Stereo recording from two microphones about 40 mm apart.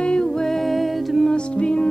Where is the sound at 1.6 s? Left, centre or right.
Left.